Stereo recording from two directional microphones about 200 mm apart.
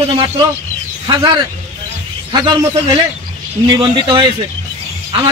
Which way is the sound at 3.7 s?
25° right (ahead or behind).